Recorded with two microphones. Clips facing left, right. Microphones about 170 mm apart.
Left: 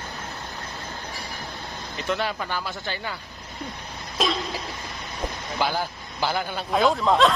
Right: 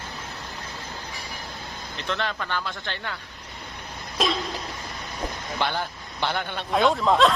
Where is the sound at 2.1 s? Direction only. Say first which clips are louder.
Left 2 dB; 10° left (ahead or behind).